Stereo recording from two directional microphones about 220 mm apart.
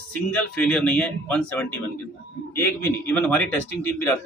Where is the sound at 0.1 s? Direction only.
5° left (ahead or behind).